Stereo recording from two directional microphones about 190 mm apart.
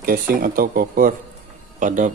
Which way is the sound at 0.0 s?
50° right (ahead or behind).